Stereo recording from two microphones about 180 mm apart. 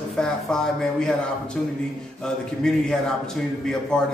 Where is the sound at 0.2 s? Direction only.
5° left (ahead or behind).